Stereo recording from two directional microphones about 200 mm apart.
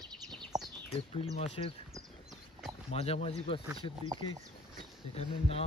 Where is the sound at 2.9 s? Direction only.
30° left (ahead or behind).